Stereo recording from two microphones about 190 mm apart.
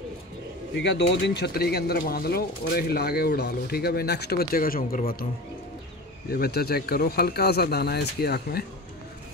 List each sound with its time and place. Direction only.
0.7 s speech: 65° left (ahead or behind); by 5.1 s 50° left (ahead or behind)
6.3 s speech: 55° left (ahead or behind)